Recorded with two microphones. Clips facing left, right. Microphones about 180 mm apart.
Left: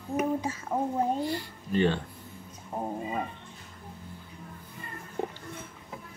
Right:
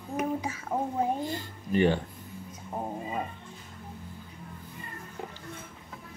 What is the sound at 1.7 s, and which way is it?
Speech, 15° right (ahead or behind).